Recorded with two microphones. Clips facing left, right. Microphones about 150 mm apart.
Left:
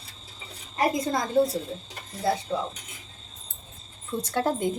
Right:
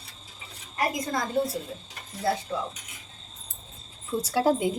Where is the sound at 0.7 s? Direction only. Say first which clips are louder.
Left 3 dB; 25° left (ahead or behind).